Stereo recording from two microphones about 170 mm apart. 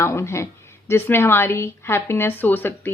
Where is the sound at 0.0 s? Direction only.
15° left (ahead or behind).